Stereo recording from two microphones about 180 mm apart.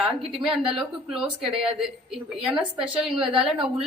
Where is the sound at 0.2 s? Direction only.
30° right (ahead or behind).